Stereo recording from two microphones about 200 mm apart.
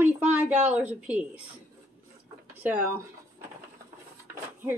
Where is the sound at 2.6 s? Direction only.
10° right (ahead or behind).